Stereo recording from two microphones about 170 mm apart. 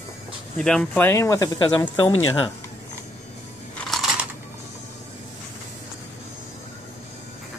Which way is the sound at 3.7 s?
Centre (ahead or behind).